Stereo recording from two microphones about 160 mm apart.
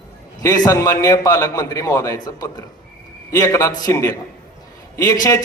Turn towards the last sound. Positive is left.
turn(degrees=20)  # may be behind; listen again after turning